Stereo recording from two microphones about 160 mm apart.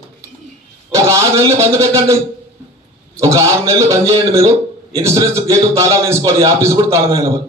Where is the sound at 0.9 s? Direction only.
20° right (ahead or behind).